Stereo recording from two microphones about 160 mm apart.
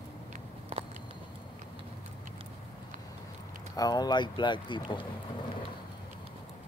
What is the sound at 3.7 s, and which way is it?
Speech, 25° left (ahead or behind).